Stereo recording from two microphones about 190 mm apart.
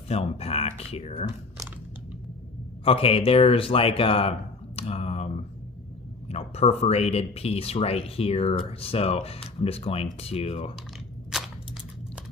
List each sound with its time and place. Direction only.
0.1 s speech: 30° left (ahead or behind)
2.8 s speech: 30° left (ahead or behind)
11.3 s a sound: centre (ahead or behind)